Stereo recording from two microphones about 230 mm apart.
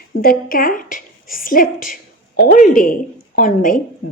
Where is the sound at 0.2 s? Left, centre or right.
Left.